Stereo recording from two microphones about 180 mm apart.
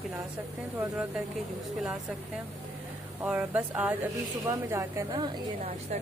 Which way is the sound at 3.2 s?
5° right (ahead or behind).